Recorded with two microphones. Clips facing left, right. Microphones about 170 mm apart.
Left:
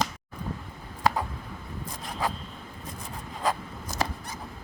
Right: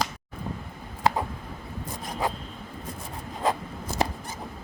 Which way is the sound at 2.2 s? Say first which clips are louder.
Right 1 dB; 20° right (ahead or behind).